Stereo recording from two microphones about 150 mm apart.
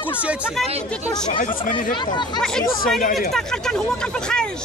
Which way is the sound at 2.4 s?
5° left (ahead or behind).